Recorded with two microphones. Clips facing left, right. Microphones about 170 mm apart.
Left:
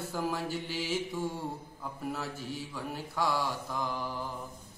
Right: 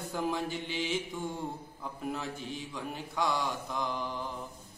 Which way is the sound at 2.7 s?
5° left (ahead or behind).